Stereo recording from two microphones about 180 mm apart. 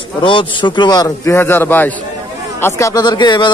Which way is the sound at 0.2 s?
25° left (ahead or behind).